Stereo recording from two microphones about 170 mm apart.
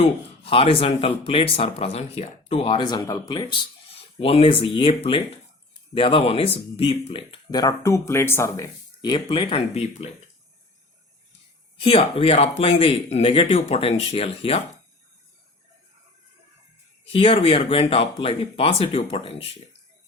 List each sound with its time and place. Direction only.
0.0 s speech: 35° left (ahead or behind)
11.8 s speech: 30° left (ahead or behind)
17.1 s speech: 35° left (ahead or behind)